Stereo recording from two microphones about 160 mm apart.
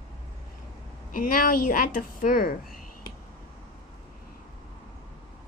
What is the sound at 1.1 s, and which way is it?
A woman's voice, 60° left (ahead or behind).